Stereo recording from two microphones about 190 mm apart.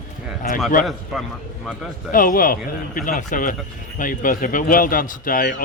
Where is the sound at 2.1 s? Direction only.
45° left (ahead or behind).